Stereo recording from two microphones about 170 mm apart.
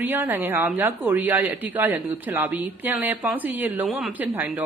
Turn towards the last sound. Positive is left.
turn(degrees=-10)  # may be behind; listen again after turning